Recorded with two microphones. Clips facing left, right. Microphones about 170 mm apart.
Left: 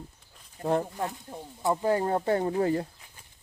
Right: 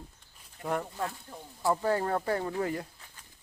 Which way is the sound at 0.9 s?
20° left (ahead or behind).